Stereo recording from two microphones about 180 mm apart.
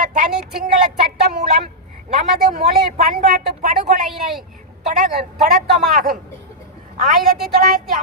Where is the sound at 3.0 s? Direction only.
45° right (ahead or behind).